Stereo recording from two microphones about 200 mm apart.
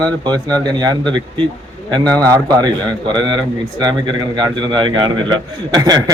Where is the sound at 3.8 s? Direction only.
20° right (ahead or behind).